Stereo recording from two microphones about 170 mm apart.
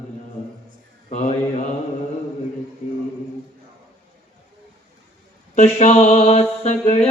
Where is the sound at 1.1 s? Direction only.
40° left (ahead or behind).